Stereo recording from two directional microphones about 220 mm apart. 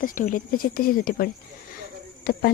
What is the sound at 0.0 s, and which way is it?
Speech, 40° left (ahead or behind).